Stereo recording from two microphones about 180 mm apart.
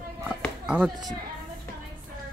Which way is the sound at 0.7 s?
5° right (ahead or behind).